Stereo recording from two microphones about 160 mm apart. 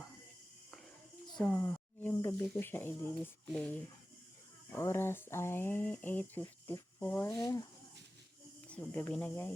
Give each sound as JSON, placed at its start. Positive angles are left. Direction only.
{"t": 1.4, "sound": "speech", "side_deg": 10}
{"t": 7.4, "sound": "speech", "side_deg": 25}
{"t": 8.6, "sound": "speech", "side_deg": 10}